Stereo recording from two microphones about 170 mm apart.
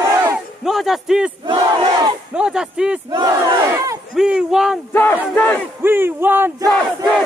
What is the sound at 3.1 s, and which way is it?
Battle cry, 20° right (ahead or behind).